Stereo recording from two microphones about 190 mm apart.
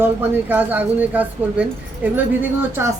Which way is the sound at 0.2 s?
10° right (ahead or behind).